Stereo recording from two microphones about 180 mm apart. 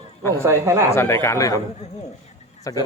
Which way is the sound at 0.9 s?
15° left (ahead or behind).